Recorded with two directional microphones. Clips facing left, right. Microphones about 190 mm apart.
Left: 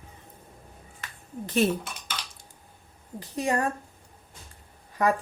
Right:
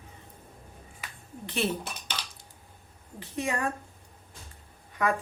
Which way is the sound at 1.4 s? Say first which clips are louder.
Left 6 dB; 40° left (ahead or behind).